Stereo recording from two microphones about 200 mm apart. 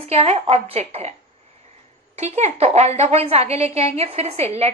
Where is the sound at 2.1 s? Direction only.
35° right (ahead or behind).